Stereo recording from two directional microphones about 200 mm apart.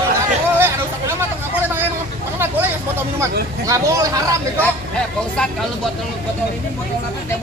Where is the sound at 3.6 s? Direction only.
15° right (ahead or behind).